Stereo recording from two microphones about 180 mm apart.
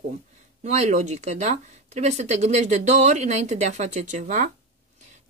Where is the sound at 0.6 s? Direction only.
40° right (ahead or behind).